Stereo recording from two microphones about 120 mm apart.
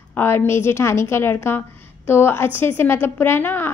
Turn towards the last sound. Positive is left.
turn(degrees=15)  # may be behind; listen again after turning